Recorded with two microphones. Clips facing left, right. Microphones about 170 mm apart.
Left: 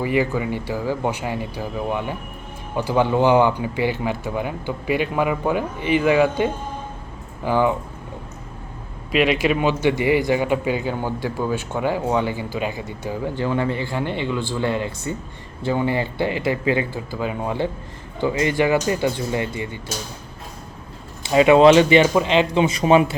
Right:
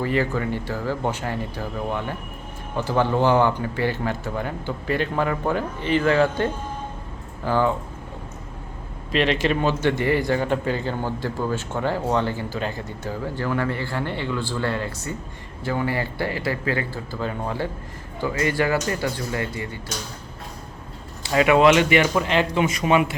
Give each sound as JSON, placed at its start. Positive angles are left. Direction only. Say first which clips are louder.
{"t": 0.0, "sound": "speech", "louder": "left 2 dB", "side_deg": 10}
{"t": 9.1, "sound": "speech", "louder": "left 3 dB", "side_deg": 10}
{"t": 18.2, "sound": "speech", "louder": "left 3 dB", "side_deg": 20}
{"t": 21.2, "sound": "a man's voice", "louder": "left 4 dB", "side_deg": 25}